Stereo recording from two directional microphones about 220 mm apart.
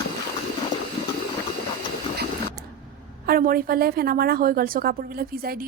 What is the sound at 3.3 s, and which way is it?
A woman's voice, 40° right (ahead or behind).